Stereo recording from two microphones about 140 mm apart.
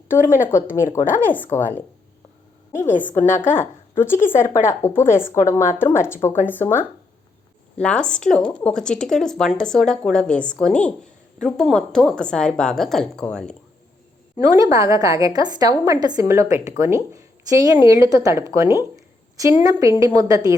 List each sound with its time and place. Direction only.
0.1 s a woman's voice: 70° left (ahead or behind)
1.5 s a woman's voice: 20° left (ahead or behind)
2.7 s a woman's voice: 60° left (ahead or behind)
3.0 s a woman's voice: 15° left (ahead or behind)
14.3 s a woman's voice: 25° right (ahead or behind)
18.9 s a sound: 20° right (ahead or behind)
20.1 s a woman's voice: 25° right (ahead or behind)